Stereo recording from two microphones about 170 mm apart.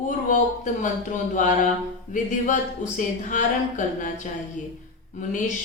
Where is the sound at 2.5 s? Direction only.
45° left (ahead or behind).